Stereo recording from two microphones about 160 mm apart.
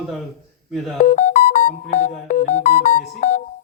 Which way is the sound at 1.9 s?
55° left (ahead or behind).